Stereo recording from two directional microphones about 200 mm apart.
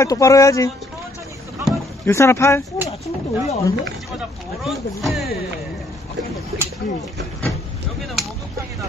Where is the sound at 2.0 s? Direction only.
15° left (ahead or behind).